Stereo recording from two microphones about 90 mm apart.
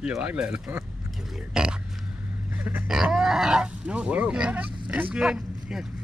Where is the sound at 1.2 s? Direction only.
5° right (ahead or behind).